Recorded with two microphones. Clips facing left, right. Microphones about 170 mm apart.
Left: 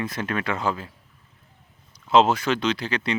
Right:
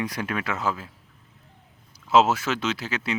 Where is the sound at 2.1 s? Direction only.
5° right (ahead or behind).